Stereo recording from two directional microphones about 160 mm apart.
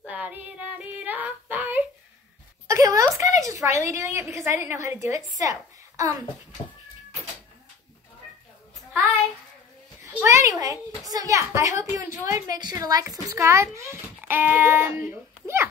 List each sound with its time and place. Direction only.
0.0 s child singing: 10° right (ahead or behind)
2.7 s a sound: 20° right (ahead or behind)
3.8 s a child's voice: 15° right (ahead or behind)
10.1 s a child's voice: 15° right (ahead or behind)